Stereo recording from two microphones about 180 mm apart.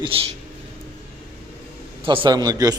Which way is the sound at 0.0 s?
30° right (ahead or behind).